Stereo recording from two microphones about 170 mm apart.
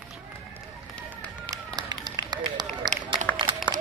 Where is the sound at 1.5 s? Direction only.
25° right (ahead or behind).